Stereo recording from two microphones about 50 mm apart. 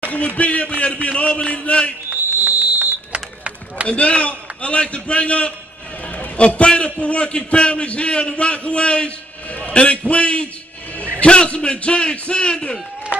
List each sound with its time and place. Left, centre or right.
0.0 s a man's voice: left
2.0 s a sound: right
3.8 s a man's voice: left